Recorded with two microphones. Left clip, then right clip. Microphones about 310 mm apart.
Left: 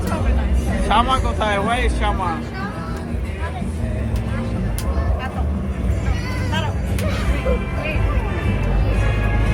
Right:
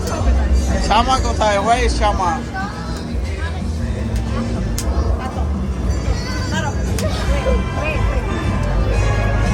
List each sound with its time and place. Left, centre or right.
0.9 s speech: centre